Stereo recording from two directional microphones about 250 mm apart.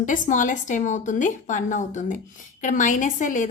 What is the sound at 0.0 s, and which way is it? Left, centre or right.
A woman's voice, left.